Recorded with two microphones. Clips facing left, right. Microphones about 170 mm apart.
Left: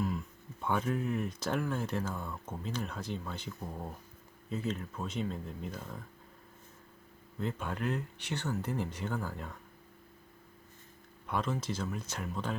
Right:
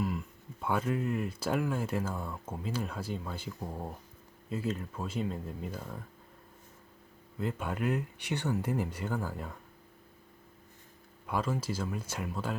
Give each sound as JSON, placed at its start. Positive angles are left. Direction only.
{"t": 0.6, "sound": "speech", "side_deg": -5}
{"t": 7.3, "sound": "speech", "side_deg": -10}
{"t": 11.3, "sound": "speech", "side_deg": -5}